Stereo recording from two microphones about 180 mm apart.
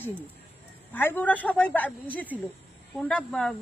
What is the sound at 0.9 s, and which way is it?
Speech, 10° left (ahead or behind).